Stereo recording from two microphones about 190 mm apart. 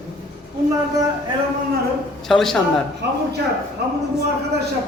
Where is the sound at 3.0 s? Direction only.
60° right (ahead or behind).